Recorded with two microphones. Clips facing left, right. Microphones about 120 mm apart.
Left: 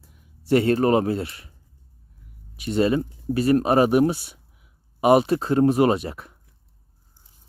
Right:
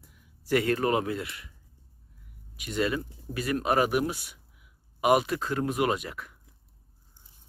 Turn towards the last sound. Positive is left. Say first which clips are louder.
# left 6 dB
turn(degrees=30)  # may be behind; listen again after turning